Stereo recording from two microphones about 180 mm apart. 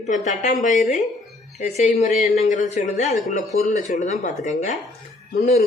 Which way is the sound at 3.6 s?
40° left (ahead or behind).